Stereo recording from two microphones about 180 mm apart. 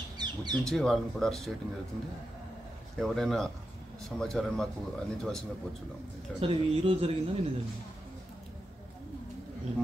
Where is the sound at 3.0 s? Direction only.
Centre (ahead or behind).